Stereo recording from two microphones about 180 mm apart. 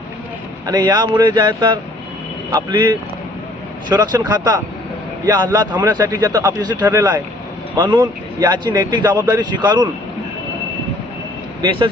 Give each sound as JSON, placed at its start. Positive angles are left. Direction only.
{"t": 0.7, "sound": "a man's voice", "side_deg": -20}
{"t": 6.7, "sound": "speech", "side_deg": -10}
{"t": 7.8, "sound": "a man's voice", "side_deg": -25}